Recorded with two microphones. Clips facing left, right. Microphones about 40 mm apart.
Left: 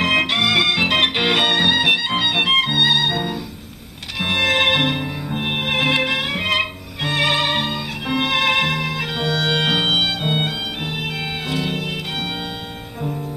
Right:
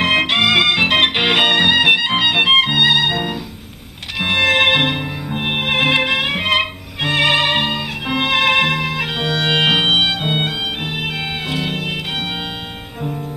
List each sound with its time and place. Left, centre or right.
0.0 s music: right